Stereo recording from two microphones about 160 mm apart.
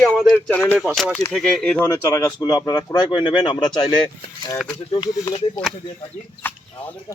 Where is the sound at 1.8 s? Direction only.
20° left (ahead or behind).